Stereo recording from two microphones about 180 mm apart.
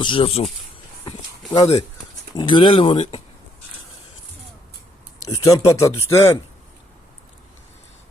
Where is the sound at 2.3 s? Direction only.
25° left (ahead or behind).